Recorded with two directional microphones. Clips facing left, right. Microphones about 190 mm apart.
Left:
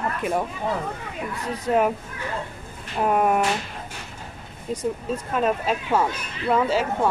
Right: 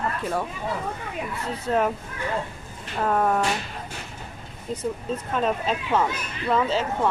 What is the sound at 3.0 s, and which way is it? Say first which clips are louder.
Speech: left 2 dB; 15° left (ahead or behind).